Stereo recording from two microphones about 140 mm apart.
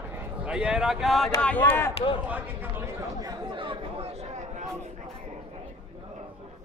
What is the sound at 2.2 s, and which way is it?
Speech, 10° right (ahead or behind).